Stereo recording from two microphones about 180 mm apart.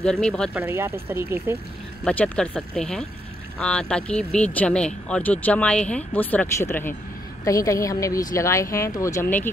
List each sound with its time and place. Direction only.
0.0 s speech: 5° left (ahead or behind)
0.6 s speech: 10° right (ahead or behind)
2.0 s speech: 5° left (ahead or behind)